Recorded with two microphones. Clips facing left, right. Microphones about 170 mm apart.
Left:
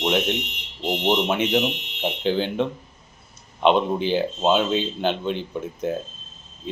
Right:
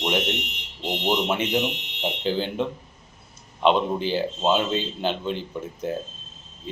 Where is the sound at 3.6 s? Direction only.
55° left (ahead or behind).